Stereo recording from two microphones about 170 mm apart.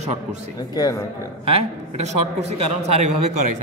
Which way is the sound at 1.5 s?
35° right (ahead or behind).